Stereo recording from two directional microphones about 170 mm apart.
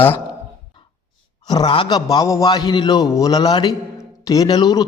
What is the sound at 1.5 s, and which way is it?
A man's voice, 25° left (ahead or behind).